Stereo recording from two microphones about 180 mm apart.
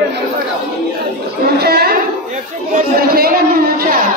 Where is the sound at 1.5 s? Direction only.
60° right (ahead or behind).